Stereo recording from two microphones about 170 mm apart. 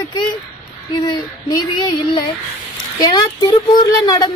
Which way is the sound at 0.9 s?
25° left (ahead or behind).